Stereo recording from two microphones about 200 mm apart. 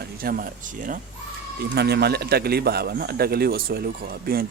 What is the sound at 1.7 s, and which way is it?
A man's voice, 55° right (ahead or behind).